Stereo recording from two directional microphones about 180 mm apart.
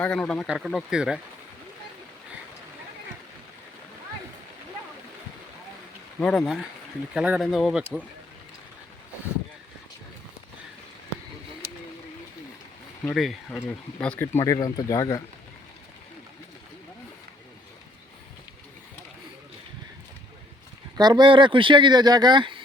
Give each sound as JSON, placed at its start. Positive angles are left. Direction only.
{"t": 0.0, "sound": "speech", "side_deg": 5}
{"t": 6.1, "sound": "speech", "side_deg": 5}
{"t": 13.1, "sound": "speech", "side_deg": 0}
{"t": 14.3, "sound": "speech", "side_deg": 15}
{"t": 21.0, "sound": "speech", "side_deg": -25}